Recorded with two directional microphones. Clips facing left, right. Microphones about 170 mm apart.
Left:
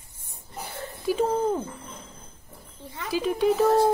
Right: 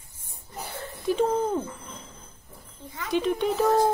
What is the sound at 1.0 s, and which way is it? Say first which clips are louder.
Speech: even; 5° left (ahead or behind).